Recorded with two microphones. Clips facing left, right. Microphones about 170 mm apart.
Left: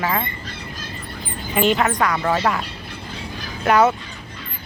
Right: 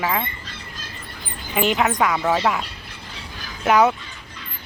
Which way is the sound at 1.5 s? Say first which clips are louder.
Left 2 dB; 5° right (ahead or behind).